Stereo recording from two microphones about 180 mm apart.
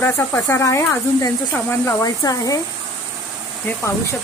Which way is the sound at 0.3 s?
15° left (ahead or behind).